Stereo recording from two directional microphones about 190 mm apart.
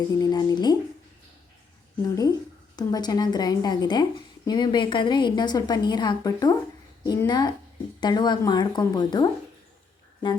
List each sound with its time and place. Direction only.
0.2 s a woman's voice: 20° left (ahead or behind)
2.0 s a woman's voice: 15° left (ahead or behind)